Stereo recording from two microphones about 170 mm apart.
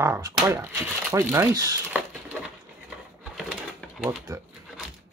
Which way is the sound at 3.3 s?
Centre (ahead or behind).